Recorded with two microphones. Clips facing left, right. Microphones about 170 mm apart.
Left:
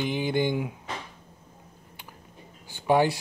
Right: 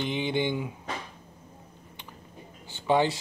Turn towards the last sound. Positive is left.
turn(degrees=10)  # may be behind; listen again after turning